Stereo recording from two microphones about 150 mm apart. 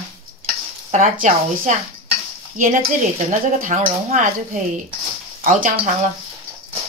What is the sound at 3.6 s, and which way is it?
Speech, 60° right (ahead or behind).